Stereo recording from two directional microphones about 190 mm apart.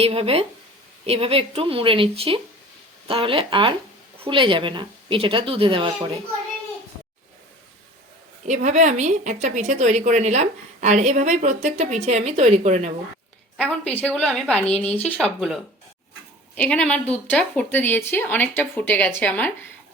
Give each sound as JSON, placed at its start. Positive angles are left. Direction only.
{"t": 0.0, "sound": "a woman's voice", "side_deg": -30}
{"t": 8.4, "sound": "a woman's voice", "side_deg": -40}
{"t": 13.6, "sound": "a woman's voice", "side_deg": 5}